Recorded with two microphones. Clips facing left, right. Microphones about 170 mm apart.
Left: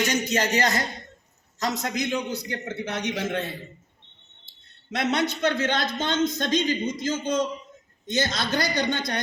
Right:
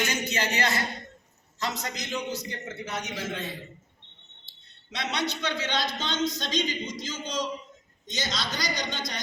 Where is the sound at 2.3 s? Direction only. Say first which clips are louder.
Left 4 dB; 65° left (ahead or behind).